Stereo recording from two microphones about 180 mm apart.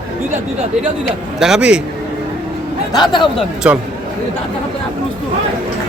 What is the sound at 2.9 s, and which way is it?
Speech, 25° left (ahead or behind).